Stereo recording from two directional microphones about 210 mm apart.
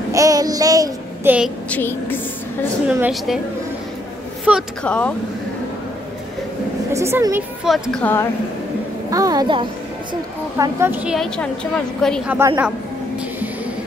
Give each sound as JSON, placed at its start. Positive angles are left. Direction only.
{"t": 0.1, "sound": "child singing", "side_deg": -15}
{"t": 1.7, "sound": "speech", "side_deg": 10}
{"t": 2.9, "sound": "a woman's voice", "side_deg": -5}
{"t": 4.5, "sound": "a woman's voice", "side_deg": 0}
{"t": 6.9, "sound": "speech", "side_deg": -15}
{"t": 7.6, "sound": "a woman's voice", "side_deg": 0}
{"t": 9.1, "sound": "a woman's voice", "side_deg": -15}
{"t": 12.3, "sound": "speech", "side_deg": -10}